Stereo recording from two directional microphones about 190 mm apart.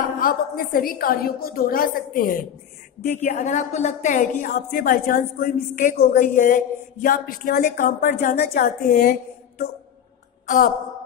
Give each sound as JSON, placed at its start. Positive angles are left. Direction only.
{"t": 0.2, "sound": "a woman's voice", "side_deg": 50}